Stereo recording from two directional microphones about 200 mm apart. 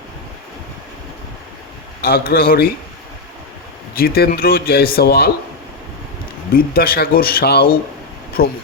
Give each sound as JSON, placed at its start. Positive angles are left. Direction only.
{"t": 2.0, "sound": "speech", "side_deg": 50}
{"t": 3.9, "sound": "speech", "side_deg": 50}
{"t": 6.5, "sound": "speech", "side_deg": 45}